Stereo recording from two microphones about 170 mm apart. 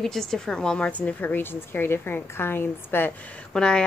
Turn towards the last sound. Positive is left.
turn(degrees=5)  # may be behind; listen again after turning